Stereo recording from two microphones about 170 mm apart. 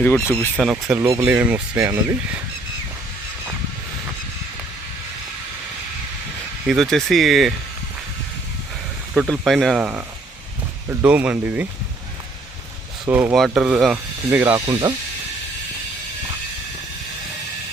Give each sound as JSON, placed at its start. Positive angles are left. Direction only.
{"t": 0.0, "sound": "speech", "side_deg": 10}
{"t": 0.6, "sound": "speech", "side_deg": 0}
{"t": 0.9, "sound": "speech", "side_deg": -15}
{"t": 6.7, "sound": "speech", "side_deg": 0}
{"t": 9.1, "sound": "speech", "side_deg": 0}
{"t": 11.0, "sound": "speech", "side_deg": -10}
{"t": 13.1, "sound": "speech", "side_deg": -10}
{"t": 14.7, "sound": "speech", "side_deg": -25}